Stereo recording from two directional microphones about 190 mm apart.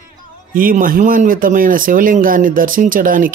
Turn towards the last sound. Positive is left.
turn(degrees=-45)  # may be behind; listen again after turning